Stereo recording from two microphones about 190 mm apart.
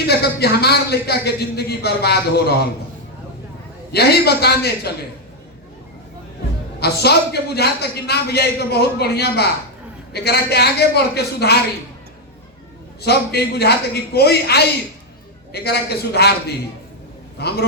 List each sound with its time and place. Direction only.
0.1 s a man's voice: 55° left (ahead or behind)
3.9 s a man's voice: 55° left (ahead or behind)
6.7 s a man's voice: 55° left (ahead or behind)
13.0 s a man's voice: 55° left (ahead or behind)